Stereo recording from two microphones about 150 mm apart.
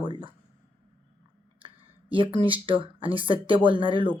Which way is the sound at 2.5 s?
35° right (ahead or behind).